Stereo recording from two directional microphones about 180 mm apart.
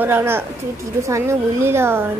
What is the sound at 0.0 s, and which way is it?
Speech, 10° right (ahead or behind).